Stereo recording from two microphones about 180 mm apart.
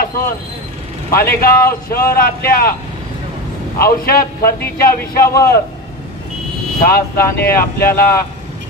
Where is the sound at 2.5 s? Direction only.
55° left (ahead or behind).